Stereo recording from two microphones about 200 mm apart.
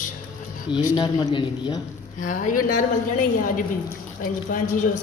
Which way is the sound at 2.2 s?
40° left (ahead or behind).